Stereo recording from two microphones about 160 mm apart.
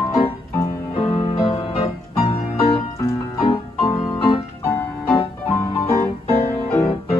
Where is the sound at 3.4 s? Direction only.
35° left (ahead or behind).